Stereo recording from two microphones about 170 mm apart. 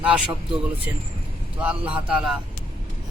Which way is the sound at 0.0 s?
5° right (ahead or behind).